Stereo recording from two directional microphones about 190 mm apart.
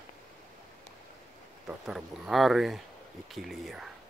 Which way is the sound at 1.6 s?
Centre (ahead or behind).